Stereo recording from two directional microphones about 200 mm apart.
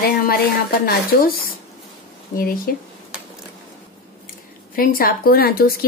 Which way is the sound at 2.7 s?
50° left (ahead or behind).